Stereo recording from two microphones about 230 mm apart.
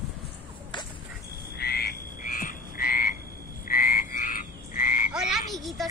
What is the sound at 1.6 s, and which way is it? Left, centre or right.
Frog, left.